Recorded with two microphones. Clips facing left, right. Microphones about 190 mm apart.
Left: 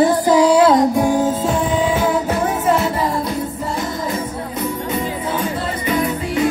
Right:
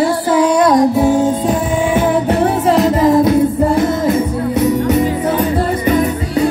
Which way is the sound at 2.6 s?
35° right (ahead or behind).